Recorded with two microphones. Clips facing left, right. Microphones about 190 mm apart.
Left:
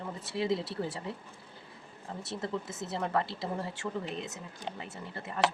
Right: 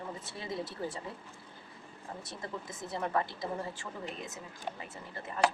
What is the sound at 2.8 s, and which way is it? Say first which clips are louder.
A woman's voice: even; 75° left (ahead or behind).